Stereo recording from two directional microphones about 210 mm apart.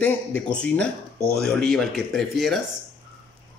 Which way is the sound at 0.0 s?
5° left (ahead or behind).